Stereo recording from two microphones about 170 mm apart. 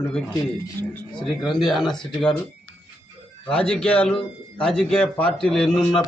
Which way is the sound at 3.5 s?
5° left (ahead or behind).